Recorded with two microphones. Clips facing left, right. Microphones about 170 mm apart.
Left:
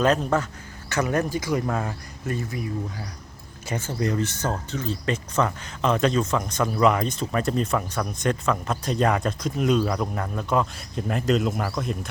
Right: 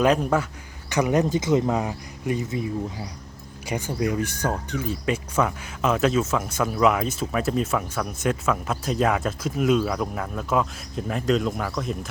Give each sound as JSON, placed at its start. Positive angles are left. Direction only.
{"t": 0.0, "sound": "a man's voice", "side_deg": -10}